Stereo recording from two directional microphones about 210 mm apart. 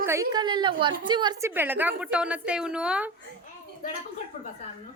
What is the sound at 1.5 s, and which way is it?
A woman's voice, 10° right (ahead or behind).